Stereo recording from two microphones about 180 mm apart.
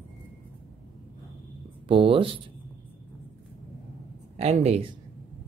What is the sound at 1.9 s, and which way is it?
Speech, 30° right (ahead or behind).